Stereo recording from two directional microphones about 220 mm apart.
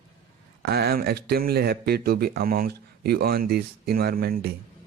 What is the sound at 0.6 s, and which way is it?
Speech, 45° right (ahead or behind).